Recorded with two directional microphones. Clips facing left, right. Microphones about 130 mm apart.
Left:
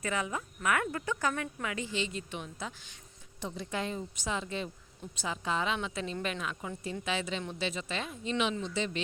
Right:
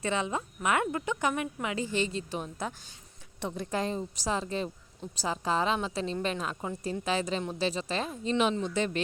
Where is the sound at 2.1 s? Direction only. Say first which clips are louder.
Right 5 dB; 35° right (ahead or behind).